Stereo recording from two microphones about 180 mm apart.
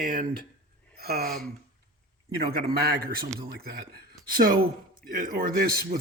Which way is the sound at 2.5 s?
60° right (ahead or behind).